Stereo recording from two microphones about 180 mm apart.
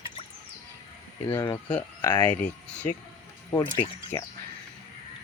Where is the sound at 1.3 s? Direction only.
15° left (ahead or behind).